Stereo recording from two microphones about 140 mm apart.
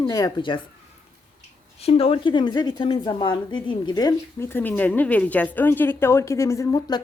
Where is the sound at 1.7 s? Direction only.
45° left (ahead or behind).